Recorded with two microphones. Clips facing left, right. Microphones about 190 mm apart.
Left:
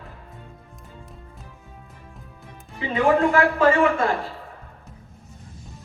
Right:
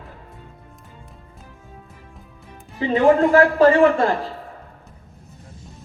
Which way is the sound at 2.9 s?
35° right (ahead or behind).